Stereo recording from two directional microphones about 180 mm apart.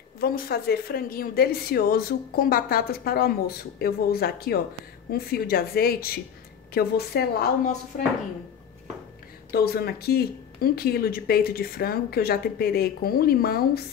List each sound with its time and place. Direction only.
0.2 s speech: 55° left (ahead or behind)
9.5 s speech: 60° left (ahead or behind)